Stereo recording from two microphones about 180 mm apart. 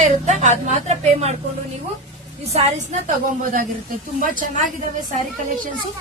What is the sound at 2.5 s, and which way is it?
Speech, 35° right (ahead or behind).